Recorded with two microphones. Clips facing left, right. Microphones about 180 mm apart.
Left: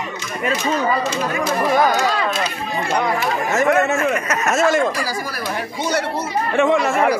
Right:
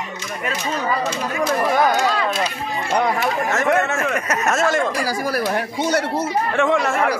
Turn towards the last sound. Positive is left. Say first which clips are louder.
# left 2 dB
turn(degrees=5)  # may be behind; listen again after turning